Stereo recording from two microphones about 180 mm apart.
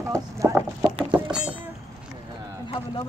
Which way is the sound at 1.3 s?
5° right (ahead or behind).